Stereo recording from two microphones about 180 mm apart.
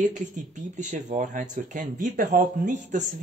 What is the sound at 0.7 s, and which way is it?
Speech, 45° right (ahead or behind).